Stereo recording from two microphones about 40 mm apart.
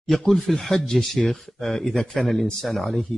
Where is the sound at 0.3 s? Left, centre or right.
Centre.